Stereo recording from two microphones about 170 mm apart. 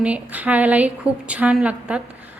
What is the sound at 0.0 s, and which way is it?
A woman's voice, 10° right (ahead or behind).